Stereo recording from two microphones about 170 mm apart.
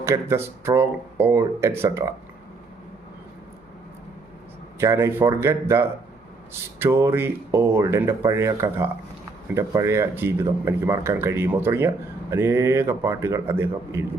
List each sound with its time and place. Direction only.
0.0 s speech: 15° right (ahead or behind)
4.8 s speech: 15° right (ahead or behind)